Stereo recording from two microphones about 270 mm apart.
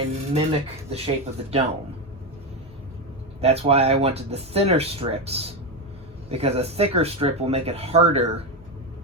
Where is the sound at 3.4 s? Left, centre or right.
Right.